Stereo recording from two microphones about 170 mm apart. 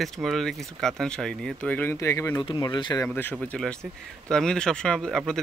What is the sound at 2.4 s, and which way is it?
Speech, 30° left (ahead or behind).